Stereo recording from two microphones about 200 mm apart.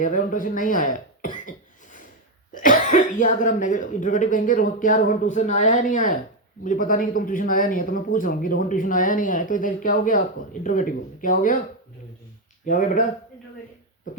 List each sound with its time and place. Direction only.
0.0 s a sound: 40° left (ahead or behind)
2.5 s a man's voice: 40° left (ahead or behind)
12.6 s speech: 40° left (ahead or behind)